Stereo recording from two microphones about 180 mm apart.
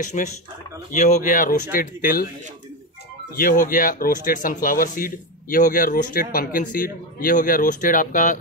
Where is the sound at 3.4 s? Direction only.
50° left (ahead or behind).